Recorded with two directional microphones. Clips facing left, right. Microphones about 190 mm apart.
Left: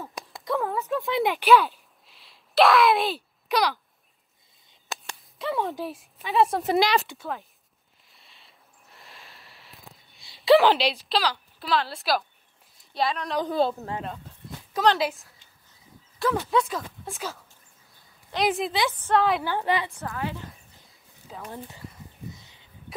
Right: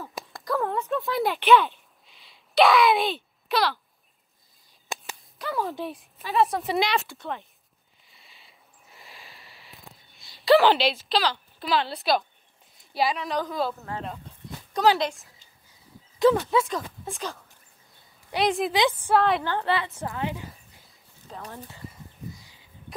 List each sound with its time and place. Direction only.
0.0 s a sound: centre (ahead or behind)
4.9 s speech: centre (ahead or behind)
8.1 s a sound: centre (ahead or behind)
12.7 s speech: 5° right (ahead or behind)
13.5 s a woman's voice: 30° left (ahead or behind)
14.0 s dog: centre (ahead or behind)
15.0 s speech: 5° left (ahead or behind)
16.3 s speech: centre (ahead or behind)
18.7 s a woman's voice: 15° right (ahead or behind)
19.1 s speech: centre (ahead or behind)
19.5 s a woman's voice: 15° left (ahead or behind)
20.1 s a woman's voice: 20° right (ahead or behind)
21.3 s speech: 5° left (ahead or behind)